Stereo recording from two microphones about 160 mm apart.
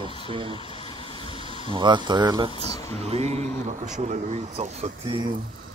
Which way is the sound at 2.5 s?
25° left (ahead or behind).